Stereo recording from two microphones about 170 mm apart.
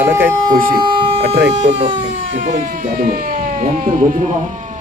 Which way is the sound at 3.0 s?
60° right (ahead or behind).